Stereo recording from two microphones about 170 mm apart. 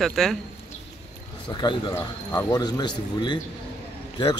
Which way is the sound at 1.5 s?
25° left (ahead or behind).